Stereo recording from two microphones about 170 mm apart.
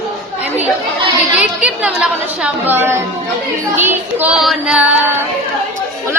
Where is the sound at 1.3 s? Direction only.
5° right (ahead or behind).